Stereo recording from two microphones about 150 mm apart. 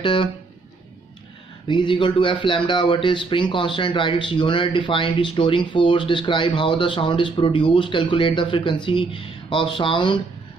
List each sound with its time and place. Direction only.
0.0 s speech: 35° left (ahead or behind)
1.7 s speech: 30° left (ahead or behind)